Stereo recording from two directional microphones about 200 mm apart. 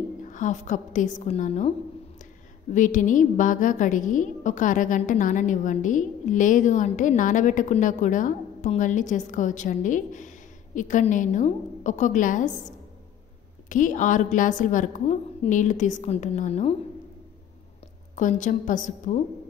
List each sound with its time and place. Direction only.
0.2 s a woman's voice: 40° left (ahead or behind)
2.7 s a woman's voice: 40° left (ahead or behind)
13.7 s a woman's voice: 40° left (ahead or behind)
18.1 s a woman's voice: 40° left (ahead or behind)